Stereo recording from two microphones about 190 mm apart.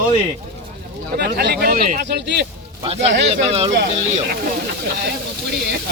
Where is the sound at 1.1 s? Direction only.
60° right (ahead or behind).